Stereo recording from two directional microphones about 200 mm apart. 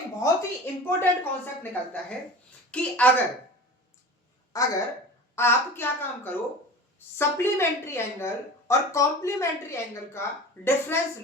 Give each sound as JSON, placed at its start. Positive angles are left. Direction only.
{"t": 0.2, "sound": "speech", "side_deg": 10}
{"t": 4.5, "sound": "speech", "side_deg": 15}